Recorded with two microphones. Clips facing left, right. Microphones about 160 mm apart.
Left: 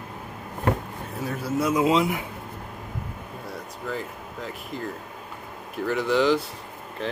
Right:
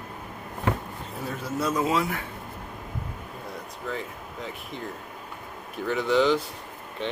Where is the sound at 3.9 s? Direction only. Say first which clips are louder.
Left 2 dB; centre (ahead or behind).